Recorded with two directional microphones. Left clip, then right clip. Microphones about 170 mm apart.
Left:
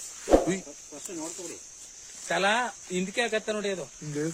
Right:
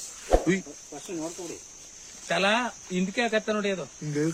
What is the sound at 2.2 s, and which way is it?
Speech, 25° left (ahead or behind).